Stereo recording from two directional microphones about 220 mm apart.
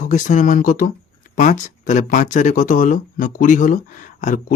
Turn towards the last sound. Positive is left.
turn(degrees=35)  # may be behind; listen again after turning